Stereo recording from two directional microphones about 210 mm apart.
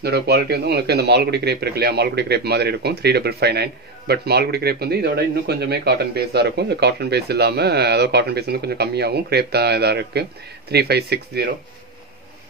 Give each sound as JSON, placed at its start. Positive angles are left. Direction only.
{"t": 0.0, "sound": "speech", "side_deg": -50}